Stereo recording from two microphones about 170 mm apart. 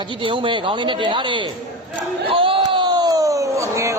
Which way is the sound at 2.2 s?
30° right (ahead or behind).